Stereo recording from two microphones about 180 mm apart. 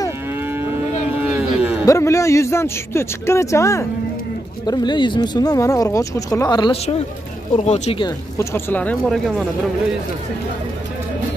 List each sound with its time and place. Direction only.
0.4 s moo: 10° right (ahead or behind)
1.2 s a sound: 10° right (ahead or behind)
1.9 s a man's voice: 15° left (ahead or behind); by 8.0 s 40° left (ahead or behind)
8.0 s a man's voice: 15° left (ahead or behind)